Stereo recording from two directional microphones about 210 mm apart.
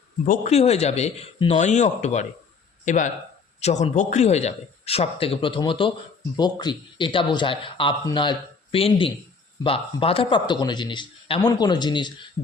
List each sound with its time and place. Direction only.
0.3 s speech: 30° left (ahead or behind)